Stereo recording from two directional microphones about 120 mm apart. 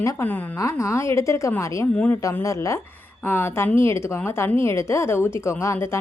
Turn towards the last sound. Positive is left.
turn(degrees=20)  # may be behind; listen again after turning